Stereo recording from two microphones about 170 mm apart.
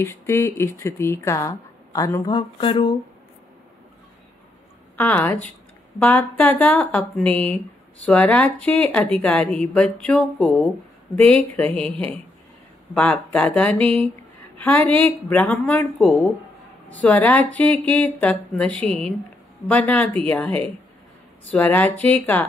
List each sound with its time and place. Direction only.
0.0 s a woman's voice: 15° left (ahead or behind)
2.3 s a sound: 30° left (ahead or behind)
4.9 s a woman's voice: 10° left (ahead or behind)